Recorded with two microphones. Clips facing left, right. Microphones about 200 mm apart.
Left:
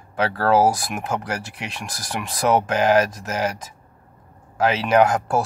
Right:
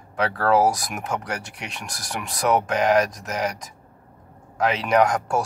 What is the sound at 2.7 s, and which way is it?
Speech, 5° left (ahead or behind).